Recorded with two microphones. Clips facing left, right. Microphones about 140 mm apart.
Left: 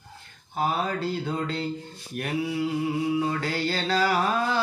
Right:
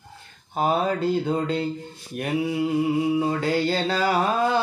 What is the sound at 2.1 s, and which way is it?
Music, 20° right (ahead or behind).